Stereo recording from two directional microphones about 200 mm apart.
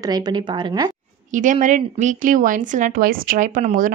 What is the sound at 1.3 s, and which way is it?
Speech, 40° right (ahead or behind).